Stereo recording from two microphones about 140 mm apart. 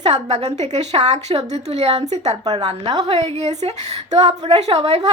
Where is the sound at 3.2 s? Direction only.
50° right (ahead or behind).